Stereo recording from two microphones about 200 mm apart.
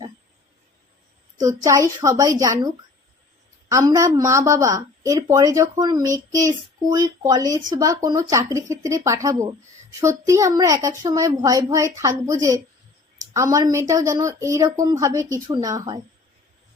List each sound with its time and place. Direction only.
1.5 s a woman's voice: 15° right (ahead or behind)